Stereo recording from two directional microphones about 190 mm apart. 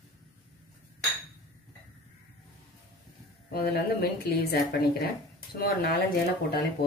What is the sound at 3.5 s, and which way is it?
Speech, 55° left (ahead or behind).